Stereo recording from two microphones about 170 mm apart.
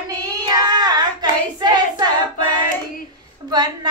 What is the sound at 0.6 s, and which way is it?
Hands, 25° right (ahead or behind).